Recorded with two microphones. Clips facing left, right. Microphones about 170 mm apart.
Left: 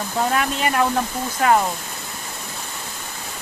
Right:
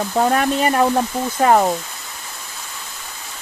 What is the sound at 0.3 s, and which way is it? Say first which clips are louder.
Speech: right 4 dB; 40° right (ahead or behind).